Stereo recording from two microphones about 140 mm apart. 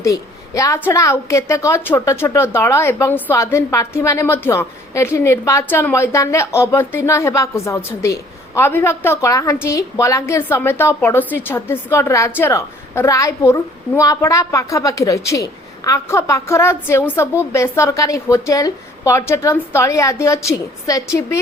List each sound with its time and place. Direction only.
0.0 s a woman's voice: 25° left (ahead or behind)